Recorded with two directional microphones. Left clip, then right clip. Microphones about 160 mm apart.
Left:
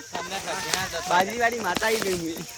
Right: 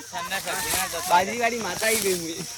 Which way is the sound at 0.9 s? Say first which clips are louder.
Right 2 dB; 15° left (ahead or behind).